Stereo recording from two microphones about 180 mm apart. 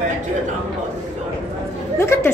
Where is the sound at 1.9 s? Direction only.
15° left (ahead or behind).